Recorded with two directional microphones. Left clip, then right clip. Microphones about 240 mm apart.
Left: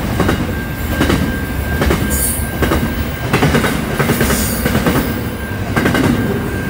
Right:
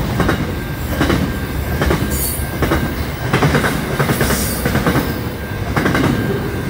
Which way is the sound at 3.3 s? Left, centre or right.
Left.